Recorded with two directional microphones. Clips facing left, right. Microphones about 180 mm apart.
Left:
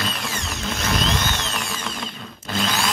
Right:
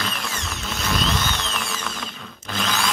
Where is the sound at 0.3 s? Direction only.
40° left (ahead or behind).